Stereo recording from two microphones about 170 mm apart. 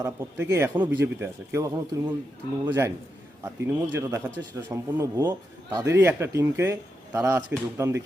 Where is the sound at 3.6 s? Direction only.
15° right (ahead or behind).